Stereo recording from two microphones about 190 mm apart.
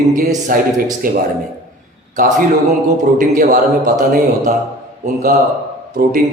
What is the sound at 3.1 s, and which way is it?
A man's voice, 45° right (ahead or behind).